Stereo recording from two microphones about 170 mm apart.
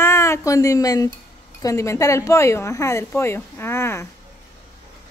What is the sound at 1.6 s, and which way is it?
Speech, 20° left (ahead or behind).